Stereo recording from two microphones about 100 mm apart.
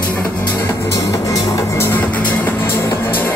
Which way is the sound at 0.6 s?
25° left (ahead or behind).